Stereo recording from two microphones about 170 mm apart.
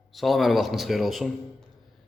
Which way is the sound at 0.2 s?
Centre (ahead or behind).